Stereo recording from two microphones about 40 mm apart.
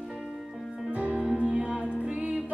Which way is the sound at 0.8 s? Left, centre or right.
Right.